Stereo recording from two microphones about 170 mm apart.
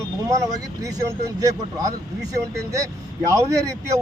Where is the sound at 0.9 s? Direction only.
20° right (ahead or behind).